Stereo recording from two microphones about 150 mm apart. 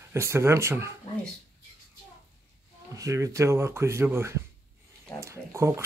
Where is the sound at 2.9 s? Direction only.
20° right (ahead or behind).